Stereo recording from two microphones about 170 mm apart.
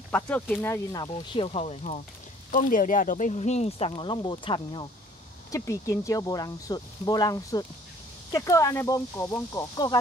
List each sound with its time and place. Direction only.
0.1 s speech: 10° left (ahead or behind); by 2.0 s 40° left (ahead or behind)
2.5 s speech: 50° left (ahead or behind); by 9.9 s 20° left (ahead or behind)